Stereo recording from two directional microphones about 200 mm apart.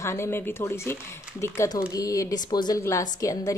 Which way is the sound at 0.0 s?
15° left (ahead or behind).